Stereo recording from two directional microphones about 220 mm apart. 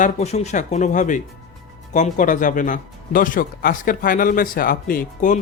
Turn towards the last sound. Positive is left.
turn(degrees=40)  # may be behind; listen again after turning